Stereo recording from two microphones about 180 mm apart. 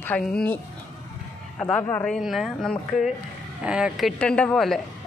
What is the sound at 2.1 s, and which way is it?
A woman's voice, centre (ahead or behind).